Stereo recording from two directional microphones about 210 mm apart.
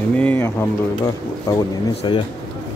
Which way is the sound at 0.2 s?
10° left (ahead or behind).